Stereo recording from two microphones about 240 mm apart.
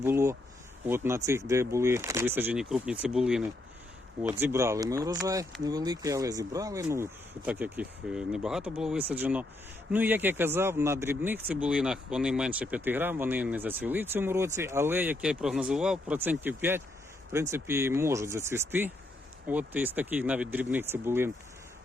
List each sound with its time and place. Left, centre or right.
0.0 s speech: centre